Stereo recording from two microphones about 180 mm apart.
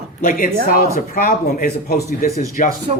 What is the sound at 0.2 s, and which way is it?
A man's voice, 45° left (ahead or behind).